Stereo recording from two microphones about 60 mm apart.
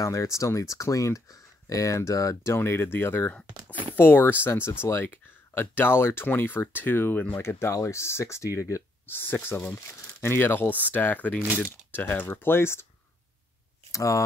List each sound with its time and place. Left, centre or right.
0.0 s speech: left
2.5 s speech: left
7.7 s speech: left
9.0 s speech: left
13.9 s speech: left